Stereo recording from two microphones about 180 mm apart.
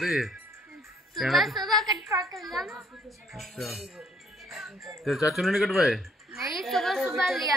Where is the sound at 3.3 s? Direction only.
Centre (ahead or behind).